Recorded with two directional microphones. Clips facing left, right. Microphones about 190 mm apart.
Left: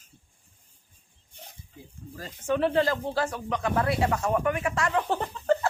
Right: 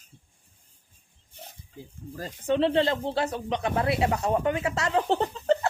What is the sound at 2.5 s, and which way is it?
Speech, 25° right (ahead or behind).